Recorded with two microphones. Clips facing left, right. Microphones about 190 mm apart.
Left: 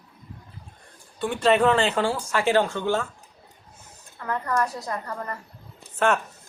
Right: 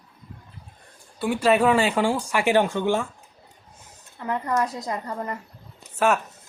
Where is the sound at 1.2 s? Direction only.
5° right (ahead or behind).